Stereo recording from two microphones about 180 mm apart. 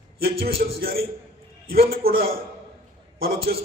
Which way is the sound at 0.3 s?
55° right (ahead or behind).